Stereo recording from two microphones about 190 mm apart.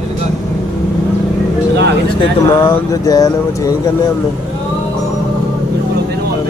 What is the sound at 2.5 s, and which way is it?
Speech, 20° left (ahead or behind).